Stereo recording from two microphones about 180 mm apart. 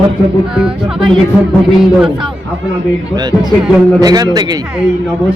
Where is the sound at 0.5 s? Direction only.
5° right (ahead or behind).